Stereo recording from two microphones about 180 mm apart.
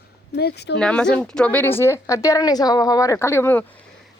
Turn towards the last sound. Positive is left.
turn(degrees=15)  # may be behind; listen again after turning